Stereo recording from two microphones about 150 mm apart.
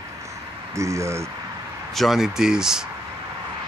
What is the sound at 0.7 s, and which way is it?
Speech, 20° right (ahead or behind).